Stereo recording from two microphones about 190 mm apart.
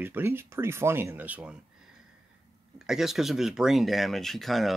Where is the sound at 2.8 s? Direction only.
Centre (ahead or behind).